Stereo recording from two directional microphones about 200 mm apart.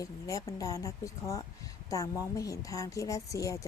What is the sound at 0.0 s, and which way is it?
Speech, 15° left (ahead or behind).